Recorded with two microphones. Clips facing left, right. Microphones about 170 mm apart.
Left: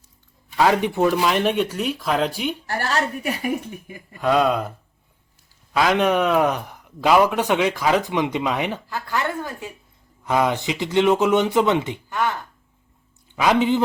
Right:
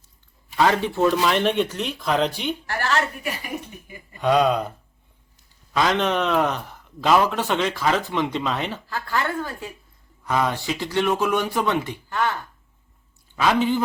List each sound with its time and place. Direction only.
0.5 s a man's voice: 10° left (ahead or behind)
2.6 s a woman's voice: 45° left (ahead or behind)
4.2 s speech: 5° left (ahead or behind)
5.7 s a man's voice: 10° left (ahead or behind)
13.3 s speech: 15° left (ahead or behind)